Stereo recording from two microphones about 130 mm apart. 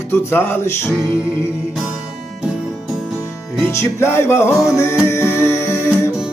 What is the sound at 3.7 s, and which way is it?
Music, 20° left (ahead or behind).